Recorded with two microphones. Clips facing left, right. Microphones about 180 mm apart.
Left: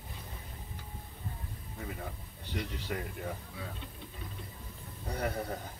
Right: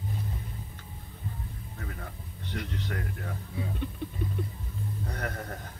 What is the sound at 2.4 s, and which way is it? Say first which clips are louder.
Speech: right 2 dB; 10° left (ahead or behind).